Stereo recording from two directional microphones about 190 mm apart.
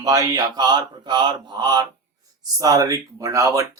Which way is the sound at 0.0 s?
20° right (ahead or behind).